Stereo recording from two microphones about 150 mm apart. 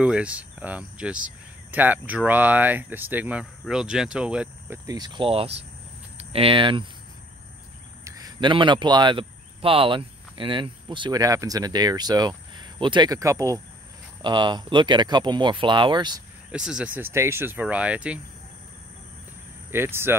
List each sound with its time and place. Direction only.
0.0 s cricket: 10° right (ahead or behind)
4.8 s speech: 25° right (ahead or behind)
8.0 s speech: 25° right (ahead or behind)
16.5 s cricket: 5° right (ahead or behind)
19.7 s cricket: 15° right (ahead or behind)